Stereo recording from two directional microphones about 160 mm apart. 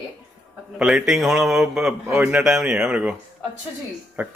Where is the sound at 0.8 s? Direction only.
5° right (ahead or behind).